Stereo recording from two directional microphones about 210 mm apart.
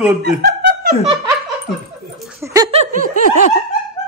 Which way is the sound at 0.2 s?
50° right (ahead or behind).